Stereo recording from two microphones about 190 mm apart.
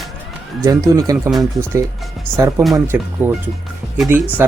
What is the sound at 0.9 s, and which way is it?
Speech, 15° right (ahead or behind).